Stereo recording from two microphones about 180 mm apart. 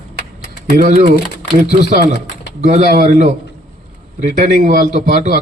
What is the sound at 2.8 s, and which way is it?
A man's voice, 45° right (ahead or behind).